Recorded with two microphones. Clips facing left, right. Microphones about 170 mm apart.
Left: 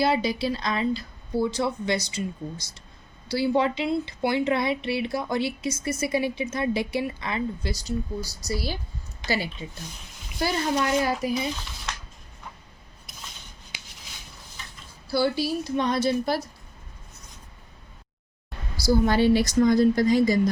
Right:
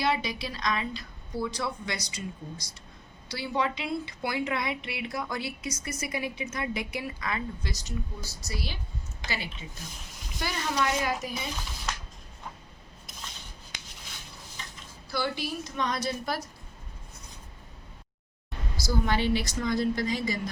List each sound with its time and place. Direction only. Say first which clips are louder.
0.0 s a woman's voice: left 6 dB; 30° left (ahead or behind)
15.1 s a woman's voice: left 8 dB; 35° left (ahead or behind)
18.8 s a woman's voice: left 8 dB; 40° left (ahead or behind)